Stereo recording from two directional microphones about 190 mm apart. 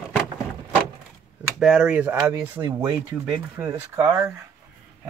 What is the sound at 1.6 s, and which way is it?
Speech, 5° right (ahead or behind).